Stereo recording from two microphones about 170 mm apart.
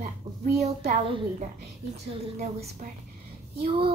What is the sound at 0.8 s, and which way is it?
Speech, 30° right (ahead or behind).